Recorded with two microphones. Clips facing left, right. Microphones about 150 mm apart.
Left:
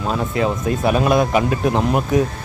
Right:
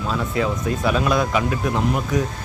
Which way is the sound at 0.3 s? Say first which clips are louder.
Left 2 dB; 25° left (ahead or behind).